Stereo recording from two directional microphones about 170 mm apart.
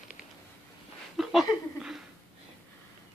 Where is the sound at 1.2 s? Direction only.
Centre (ahead or behind).